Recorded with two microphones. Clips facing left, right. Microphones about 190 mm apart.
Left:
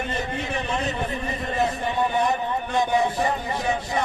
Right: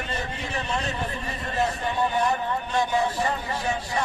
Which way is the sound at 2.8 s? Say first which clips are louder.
Left 3 dB; 20° left (ahead or behind).